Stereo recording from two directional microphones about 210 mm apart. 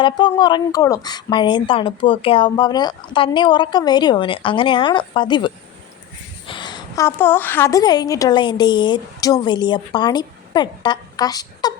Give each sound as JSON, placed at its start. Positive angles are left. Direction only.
{"t": 0.0, "sound": "speech", "side_deg": 20}
{"t": 6.5, "sound": "a woman's voice", "side_deg": 20}